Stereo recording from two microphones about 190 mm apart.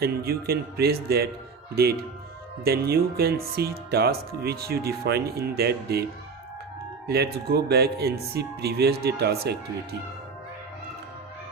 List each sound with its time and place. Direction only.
0.0 s speech: 55° right (ahead or behind)
7.1 s speech: 55° right (ahead or behind)